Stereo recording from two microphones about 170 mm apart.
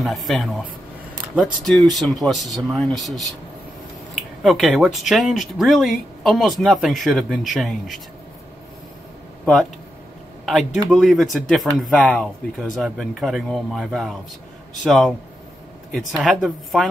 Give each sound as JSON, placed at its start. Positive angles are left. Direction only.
{"t": 0.0, "sound": "speech", "side_deg": 0}
{"t": 10.4, "sound": "speech", "side_deg": 0}